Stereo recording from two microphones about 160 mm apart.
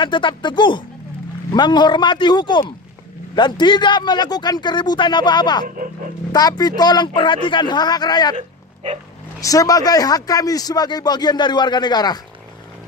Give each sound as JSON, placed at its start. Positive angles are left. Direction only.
{"t": 0.0, "sound": "a man's voice", "side_deg": 30}
{"t": 9.4, "sound": "a man's voice", "side_deg": 20}